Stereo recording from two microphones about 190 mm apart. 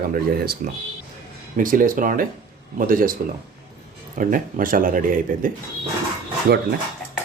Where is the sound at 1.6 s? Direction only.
45° right (ahead or behind).